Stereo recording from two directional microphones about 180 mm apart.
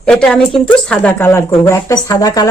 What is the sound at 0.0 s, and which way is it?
Speech, 5° left (ahead or behind).